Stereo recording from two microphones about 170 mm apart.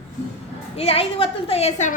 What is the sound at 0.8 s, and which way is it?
A woman's voice, 35° left (ahead or behind).